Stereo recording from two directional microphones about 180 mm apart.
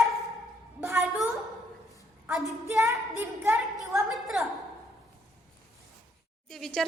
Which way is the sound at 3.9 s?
Centre (ahead or behind).